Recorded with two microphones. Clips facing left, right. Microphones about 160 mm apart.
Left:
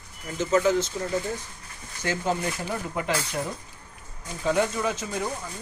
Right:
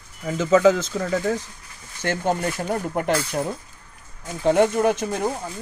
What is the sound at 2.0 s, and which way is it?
Speech, 55° right (ahead or behind).